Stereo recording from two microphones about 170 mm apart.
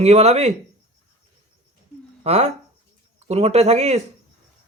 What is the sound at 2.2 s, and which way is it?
Speech, 35° right (ahead or behind).